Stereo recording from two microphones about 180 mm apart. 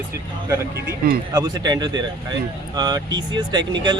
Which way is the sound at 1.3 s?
20° right (ahead or behind).